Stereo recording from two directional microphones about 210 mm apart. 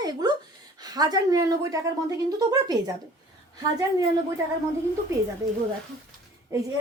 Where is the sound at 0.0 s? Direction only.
20° right (ahead or behind).